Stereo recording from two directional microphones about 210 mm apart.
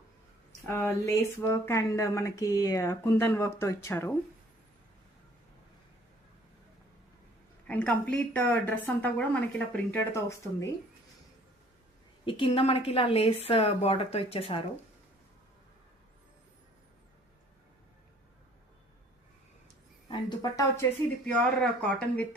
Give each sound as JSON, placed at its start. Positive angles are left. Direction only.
{"t": 0.6, "sound": "speech", "side_deg": 10}
{"t": 7.7, "sound": "speech", "side_deg": 5}
{"t": 12.2, "sound": "a woman's voice", "side_deg": 25}
{"t": 20.1, "sound": "speech", "side_deg": 15}
{"t": 21.2, "sound": "speech", "side_deg": 5}